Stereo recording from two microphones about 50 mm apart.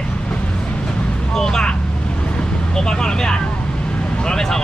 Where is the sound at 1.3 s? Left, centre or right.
Centre.